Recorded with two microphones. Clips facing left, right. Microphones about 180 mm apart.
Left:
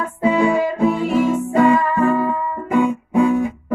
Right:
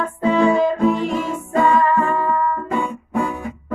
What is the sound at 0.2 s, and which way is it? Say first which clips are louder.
Music: even; 10° left (ahead or behind).